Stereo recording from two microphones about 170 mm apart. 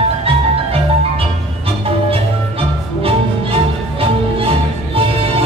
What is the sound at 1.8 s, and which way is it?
Music, 35° right (ahead or behind).